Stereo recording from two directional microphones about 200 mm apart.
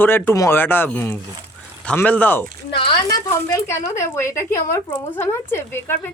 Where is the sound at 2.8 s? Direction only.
25° left (ahead or behind).